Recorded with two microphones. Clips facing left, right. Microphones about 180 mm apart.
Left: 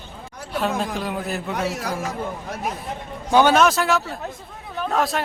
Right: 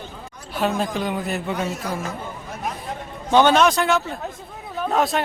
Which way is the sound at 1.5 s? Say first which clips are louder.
Left 1 dB; 75° left (ahead or behind).